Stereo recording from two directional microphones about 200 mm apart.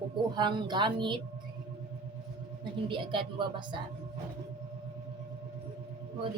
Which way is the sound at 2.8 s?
25° right (ahead or behind).